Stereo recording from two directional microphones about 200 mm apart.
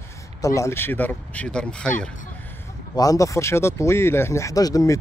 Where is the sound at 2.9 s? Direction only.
20° left (ahead or behind).